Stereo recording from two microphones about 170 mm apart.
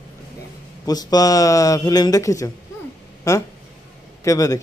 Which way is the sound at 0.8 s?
20° left (ahead or behind).